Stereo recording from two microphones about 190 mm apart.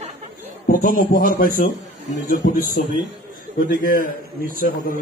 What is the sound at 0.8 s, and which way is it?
Speech, 45° left (ahead or behind).